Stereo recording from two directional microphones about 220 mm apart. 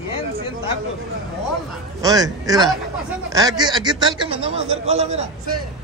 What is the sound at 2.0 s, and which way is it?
Speech, 15° right (ahead or behind).